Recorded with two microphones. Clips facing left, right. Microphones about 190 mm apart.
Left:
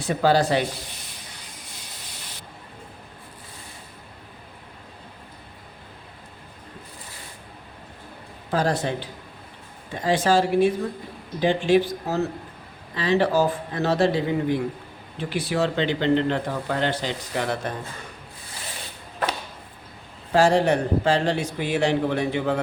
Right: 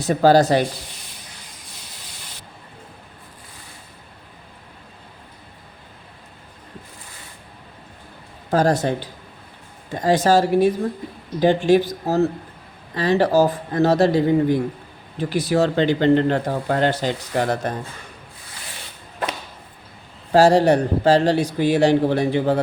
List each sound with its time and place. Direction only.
0.0 s a man's voice: 40° right (ahead or behind)
8.4 s speech: 45° right (ahead or behind)
9.9 s a man's voice: 40° right (ahead or behind)
15.2 s speech: 40° right (ahead or behind)
20.3 s a man's voice: 35° right (ahead or behind)